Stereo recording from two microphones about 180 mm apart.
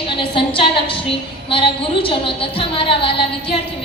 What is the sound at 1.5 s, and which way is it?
A woman's voice, 30° left (ahead or behind).